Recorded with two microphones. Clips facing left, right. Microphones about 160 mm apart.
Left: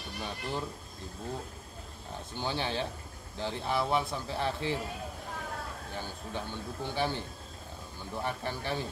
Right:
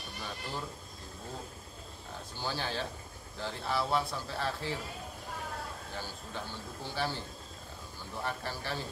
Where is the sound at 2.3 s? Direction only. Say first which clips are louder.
Left 3 dB; 20° left (ahead or behind).